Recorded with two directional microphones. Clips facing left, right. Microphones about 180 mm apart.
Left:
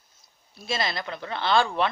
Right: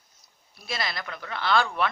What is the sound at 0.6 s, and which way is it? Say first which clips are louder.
Speech: left 4 dB; 25° left (ahead or behind).